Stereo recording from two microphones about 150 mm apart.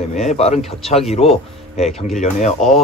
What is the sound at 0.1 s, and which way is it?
Speech, 50° left (ahead or behind).